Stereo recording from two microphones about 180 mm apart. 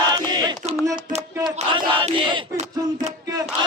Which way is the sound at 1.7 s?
30° right (ahead or behind).